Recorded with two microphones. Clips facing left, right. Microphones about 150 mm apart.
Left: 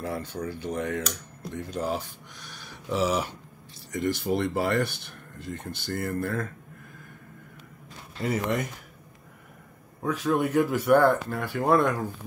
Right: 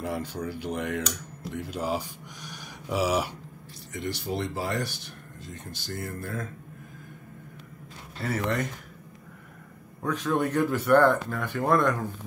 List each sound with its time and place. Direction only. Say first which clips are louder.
0.0 s speech: even; 10° right (ahead or behind)
3.9 s speech: left 5 dB; 50° left (ahead or behind)
8.2 s speech: left 1 dB; 15° left (ahead or behind)
10.0 s speech: left 1 dB; 10° left (ahead or behind)